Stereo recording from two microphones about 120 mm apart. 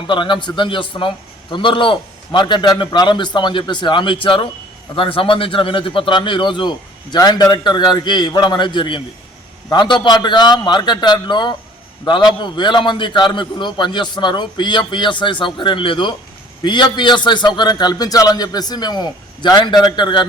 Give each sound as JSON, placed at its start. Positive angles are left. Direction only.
{"t": 0.1, "sound": "a man's voice", "side_deg": 40}